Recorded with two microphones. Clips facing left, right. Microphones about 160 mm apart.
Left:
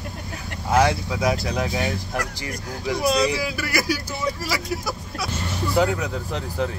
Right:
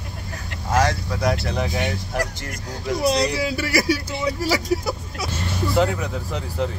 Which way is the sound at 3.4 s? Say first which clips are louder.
Right 4 dB; 30° right (ahead or behind).